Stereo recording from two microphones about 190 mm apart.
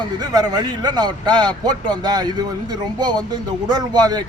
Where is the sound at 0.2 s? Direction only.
20° right (ahead or behind).